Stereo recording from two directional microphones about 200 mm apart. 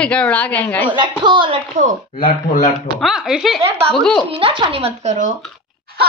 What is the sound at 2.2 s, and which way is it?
Speech, 40° left (ahead or behind).